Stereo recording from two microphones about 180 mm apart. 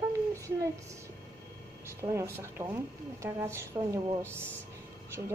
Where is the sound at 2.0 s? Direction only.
15° right (ahead or behind).